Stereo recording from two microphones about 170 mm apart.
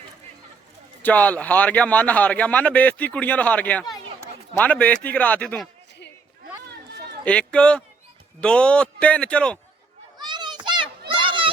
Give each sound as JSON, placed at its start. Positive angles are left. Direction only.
{"t": 1.0, "sound": "a man's voice", "side_deg": 10}
{"t": 7.3, "sound": "a man's voice", "side_deg": 5}
{"t": 10.2, "sound": "children playing", "side_deg": -25}
{"t": 11.1, "sound": "a sound", "side_deg": -30}